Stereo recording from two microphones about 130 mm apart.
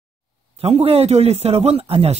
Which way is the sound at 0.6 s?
50° right (ahead or behind).